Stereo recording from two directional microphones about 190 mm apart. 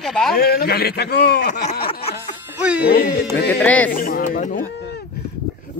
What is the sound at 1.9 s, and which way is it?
Music, 30° left (ahead or behind).